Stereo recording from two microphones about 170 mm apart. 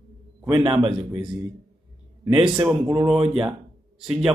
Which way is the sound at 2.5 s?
25° right (ahead or behind).